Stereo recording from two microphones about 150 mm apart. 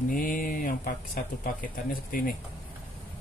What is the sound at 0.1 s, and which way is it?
Speech, 70° left (ahead or behind).